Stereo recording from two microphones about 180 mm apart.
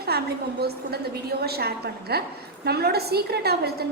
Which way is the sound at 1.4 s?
60° right (ahead or behind).